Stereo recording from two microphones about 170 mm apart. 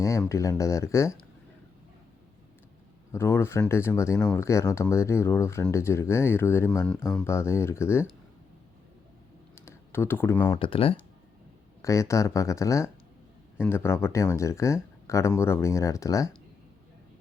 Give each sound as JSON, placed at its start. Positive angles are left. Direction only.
{"t": 0.0, "sound": "speech", "side_deg": 20}
{"t": 3.1, "sound": "speech", "side_deg": 15}
{"t": 7.3, "sound": "speech", "side_deg": 15}
{"t": 9.6, "sound": "computer keyboard", "side_deg": 15}
{"t": 10.5, "sound": "speech", "side_deg": 30}
{"t": 11.8, "sound": "speech", "side_deg": 15}